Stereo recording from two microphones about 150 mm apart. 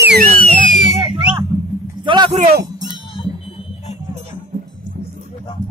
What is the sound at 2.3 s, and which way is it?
Speech, 45° right (ahead or behind).